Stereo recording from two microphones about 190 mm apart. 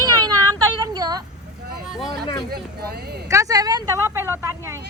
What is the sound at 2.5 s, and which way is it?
Speech, 55° right (ahead or behind).